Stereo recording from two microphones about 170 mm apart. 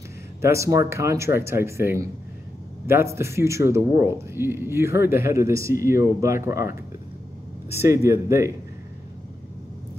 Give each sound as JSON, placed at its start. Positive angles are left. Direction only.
{"t": 0.4, "sound": "speech", "side_deg": -15}
{"t": 7.7, "sound": "speech", "side_deg": -15}